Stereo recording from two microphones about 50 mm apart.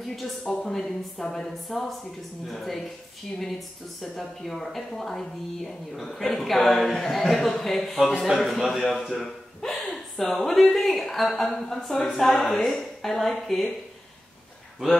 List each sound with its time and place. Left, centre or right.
0.0 s speech: centre
9.2 s a sound: centre
11.3 s speech: centre